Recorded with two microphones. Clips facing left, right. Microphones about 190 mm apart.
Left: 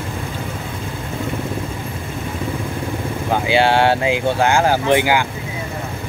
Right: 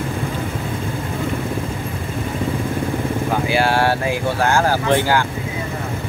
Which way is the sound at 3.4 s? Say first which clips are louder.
Left 4 dB; 25° left (ahead or behind).